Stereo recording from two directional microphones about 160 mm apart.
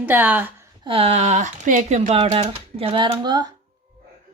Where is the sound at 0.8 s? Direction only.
35° right (ahead or behind).